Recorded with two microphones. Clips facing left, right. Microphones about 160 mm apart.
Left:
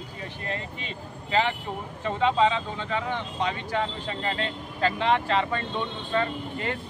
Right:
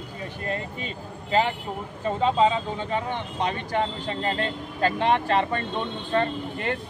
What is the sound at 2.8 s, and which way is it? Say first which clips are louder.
Speech: right 1 dB; 20° right (ahead or behind).